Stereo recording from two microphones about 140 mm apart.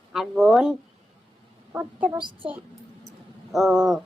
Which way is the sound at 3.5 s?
Centre (ahead or behind).